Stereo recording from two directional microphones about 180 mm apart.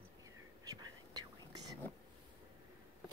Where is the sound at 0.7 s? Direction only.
20° right (ahead or behind).